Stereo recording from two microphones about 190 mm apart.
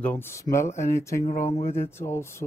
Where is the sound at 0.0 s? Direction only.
10° left (ahead or behind).